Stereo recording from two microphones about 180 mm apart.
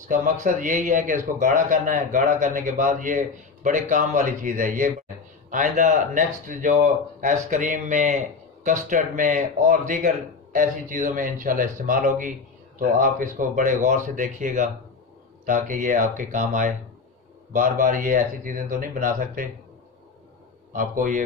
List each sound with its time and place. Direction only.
0.1 s a man's voice: 45° right (ahead or behind)
20.7 s a man's voice: 50° right (ahead or behind)